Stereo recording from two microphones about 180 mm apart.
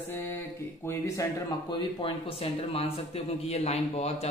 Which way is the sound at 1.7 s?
30° left (ahead or behind).